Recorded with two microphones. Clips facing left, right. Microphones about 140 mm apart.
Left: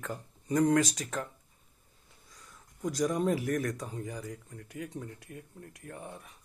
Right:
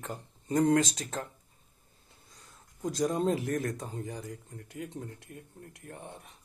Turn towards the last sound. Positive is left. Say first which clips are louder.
# left 1 dB
turn(degrees=-25)  # may be behind; listen again after turning